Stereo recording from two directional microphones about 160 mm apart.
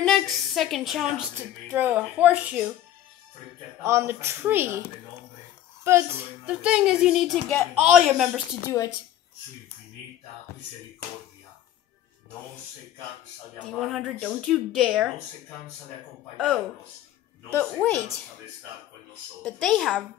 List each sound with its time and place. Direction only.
0.0 s a woman's voice: centre (ahead or behind)
1.7 s speech: 10° right (ahead or behind)
3.8 s speech: 15° right (ahead or behind)
5.9 s a woman's voice: 15° right (ahead or behind); by 7.6 s 5° left (ahead or behind)
7.7 s speech: 10° right (ahead or behind)
8.6 s speech: 20° left (ahead or behind)
13.7 s a woman's voice: centre (ahead or behind)
17.5 s speech: 5° left (ahead or behind)
19.4 s a woman's voice: centre (ahead or behind)